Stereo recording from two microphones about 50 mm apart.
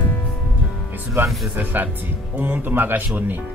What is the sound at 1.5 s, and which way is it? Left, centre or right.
Speech, right.